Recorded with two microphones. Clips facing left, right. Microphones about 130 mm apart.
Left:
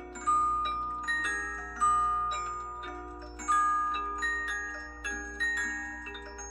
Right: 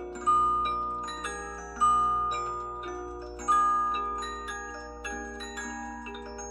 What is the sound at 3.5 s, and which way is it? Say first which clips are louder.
Music: right 3 dB; 30° right (ahead or behind).